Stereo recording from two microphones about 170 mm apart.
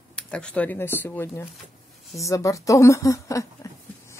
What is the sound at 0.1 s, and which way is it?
A woman's voice, 5° left (ahead or behind).